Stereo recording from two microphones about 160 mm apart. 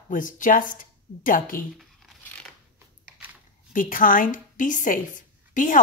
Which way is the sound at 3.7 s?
60° left (ahead or behind).